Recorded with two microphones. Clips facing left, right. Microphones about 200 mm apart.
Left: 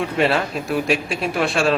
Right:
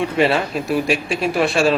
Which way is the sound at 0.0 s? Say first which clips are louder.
Right 2 dB; centre (ahead or behind).